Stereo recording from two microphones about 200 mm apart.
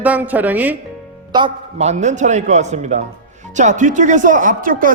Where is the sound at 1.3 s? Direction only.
30° right (ahead or behind).